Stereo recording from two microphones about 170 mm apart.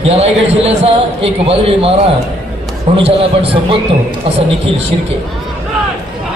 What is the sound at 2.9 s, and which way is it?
Speech, 35° right (ahead or behind).